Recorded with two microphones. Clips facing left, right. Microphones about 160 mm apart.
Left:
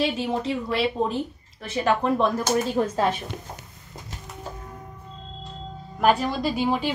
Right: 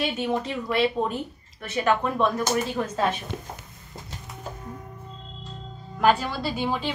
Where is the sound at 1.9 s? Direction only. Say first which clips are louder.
Left 1 dB; 35° left (ahead or behind).